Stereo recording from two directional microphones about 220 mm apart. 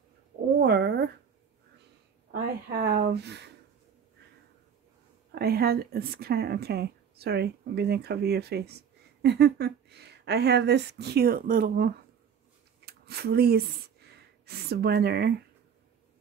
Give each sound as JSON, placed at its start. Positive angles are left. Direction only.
{"t": 0.6, "sound": "speech", "side_deg": -50}
{"t": 2.3, "sound": "speech", "side_deg": -45}
{"t": 5.3, "sound": "speech", "side_deg": -45}